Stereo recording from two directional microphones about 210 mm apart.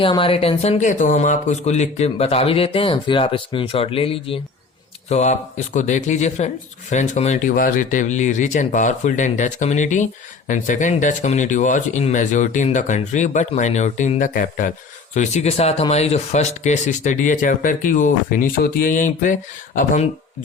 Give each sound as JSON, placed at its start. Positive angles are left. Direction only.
{"t": 0.0, "sound": "speech", "side_deg": 25}